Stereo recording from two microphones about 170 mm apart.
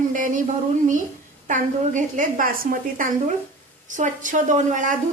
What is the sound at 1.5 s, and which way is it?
A woman's voice, 50° right (ahead or behind).